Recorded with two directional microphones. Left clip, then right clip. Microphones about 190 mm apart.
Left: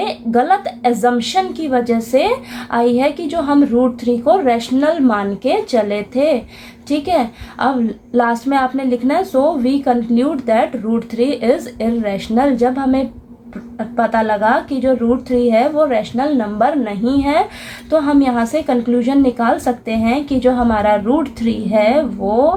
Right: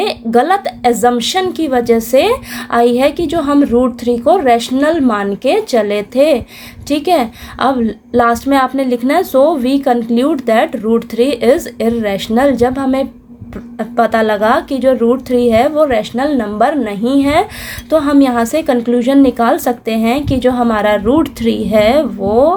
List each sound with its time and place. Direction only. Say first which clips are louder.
0.0 s a woman's voice: right 4 dB; 45° right (ahead or behind)